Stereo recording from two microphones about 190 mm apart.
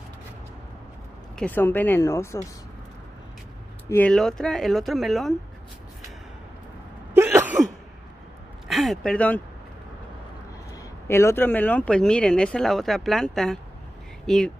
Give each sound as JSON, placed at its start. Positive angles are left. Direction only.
{"t": 1.3, "sound": "a woman's voice", "side_deg": 10}
{"t": 3.9, "sound": "speech", "side_deg": 5}
{"t": 7.2, "sound": "cough", "side_deg": -10}
{"t": 8.6, "sound": "speech", "side_deg": 0}
{"t": 11.1, "sound": "speech", "side_deg": 15}